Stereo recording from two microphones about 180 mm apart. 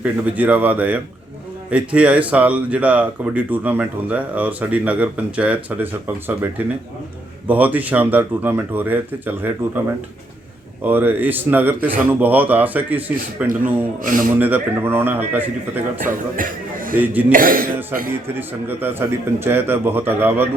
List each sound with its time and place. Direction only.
0.0 s speech: 10° right (ahead or behind)
10.8 s speech: 10° right (ahead or behind)
13.5 s speech: 50° right (ahead or behind)
14.3 s speech: 10° right (ahead or behind)
16.3 s a sound: 50° right (ahead or behind)
17.0 s speech: 10° right (ahead or behind)
17.3 s speech: 50° right (ahead or behind)
18.1 s speech: 10° right (ahead or behind)